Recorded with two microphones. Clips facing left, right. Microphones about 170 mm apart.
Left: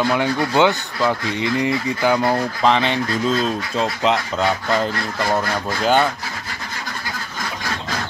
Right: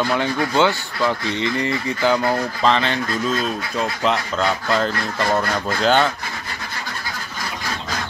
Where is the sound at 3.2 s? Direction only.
30° left (ahead or behind).